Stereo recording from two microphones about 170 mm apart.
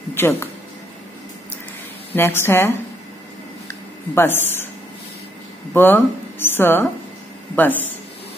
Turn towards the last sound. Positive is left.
turn(degrees=10)  # may be behind; listen again after turning